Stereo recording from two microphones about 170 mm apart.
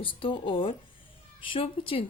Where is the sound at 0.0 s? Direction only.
30° left (ahead or behind).